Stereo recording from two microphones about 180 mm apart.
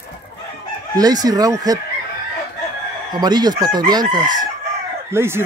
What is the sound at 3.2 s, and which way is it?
Speech, 25° right (ahead or behind).